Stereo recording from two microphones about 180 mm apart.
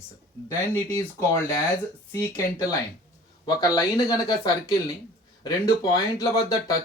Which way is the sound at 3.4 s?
20° left (ahead or behind).